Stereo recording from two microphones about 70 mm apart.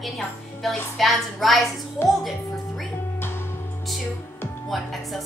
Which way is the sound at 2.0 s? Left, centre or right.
Left.